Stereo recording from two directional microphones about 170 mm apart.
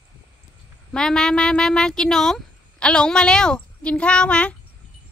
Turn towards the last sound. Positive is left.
turn(degrees=5)  # may be behind; listen again after turning